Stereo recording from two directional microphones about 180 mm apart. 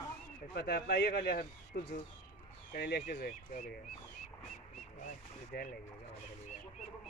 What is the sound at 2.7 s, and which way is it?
Speech, 60° left (ahead or behind).